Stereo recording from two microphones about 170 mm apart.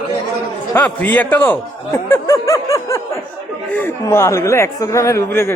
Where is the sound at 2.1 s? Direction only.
15° left (ahead or behind).